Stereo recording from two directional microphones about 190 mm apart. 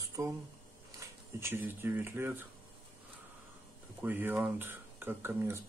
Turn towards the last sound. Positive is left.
turn(degrees=-10)  # may be behind; listen again after turning